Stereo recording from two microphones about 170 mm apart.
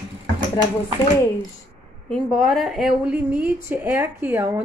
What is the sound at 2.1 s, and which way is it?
Speech, centre (ahead or behind).